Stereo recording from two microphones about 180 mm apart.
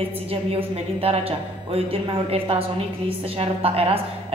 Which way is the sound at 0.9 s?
35° right (ahead or behind).